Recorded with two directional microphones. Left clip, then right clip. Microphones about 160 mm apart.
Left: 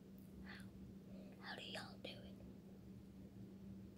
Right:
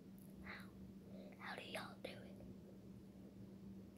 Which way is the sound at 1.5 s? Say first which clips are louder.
Right 1 dB; centre (ahead or behind).